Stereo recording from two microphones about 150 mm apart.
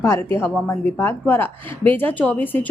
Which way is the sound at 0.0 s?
15° left (ahead or behind).